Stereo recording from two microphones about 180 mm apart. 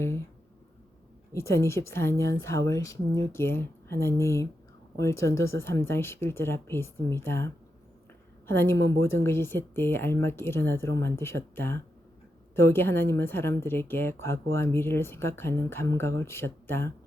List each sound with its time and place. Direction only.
1.3 s a woman's voice: 15° left (ahead or behind)